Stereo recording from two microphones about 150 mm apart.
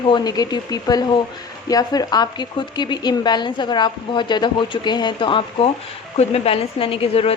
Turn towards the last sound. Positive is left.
turn(degrees=40)  # may be behind; listen again after turning